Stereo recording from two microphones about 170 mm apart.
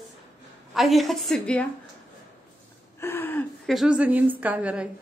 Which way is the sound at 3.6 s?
Centre (ahead or behind).